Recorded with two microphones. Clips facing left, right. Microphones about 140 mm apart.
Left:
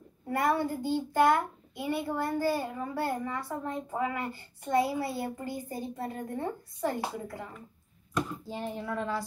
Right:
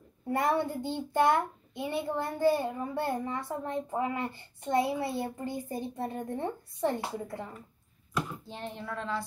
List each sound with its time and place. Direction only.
0.3 s a child's voice: 25° right (ahead or behind)
8.5 s speech: 5° left (ahead or behind)